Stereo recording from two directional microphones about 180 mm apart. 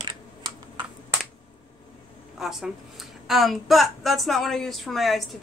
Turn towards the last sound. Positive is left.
turn(degrees=0)  # may be behind; listen again after turning